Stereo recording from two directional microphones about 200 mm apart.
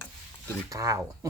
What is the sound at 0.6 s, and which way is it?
Speech, 15° right (ahead or behind).